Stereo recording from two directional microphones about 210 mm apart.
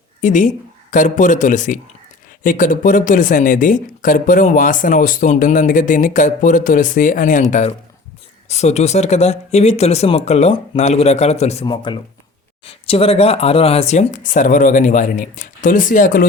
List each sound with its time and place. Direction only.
0.2 s speech: 35° left (ahead or behind)
8.4 s speech: 30° left (ahead or behind)